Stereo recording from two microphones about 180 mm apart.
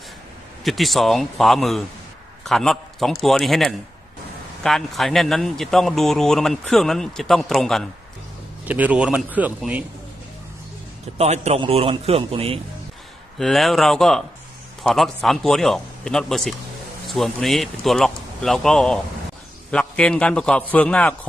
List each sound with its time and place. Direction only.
0.6 s a man's voice: centre (ahead or behind)
11.2 s a man's voice: 35° right (ahead or behind)
13.4 s a man's voice: centre (ahead or behind)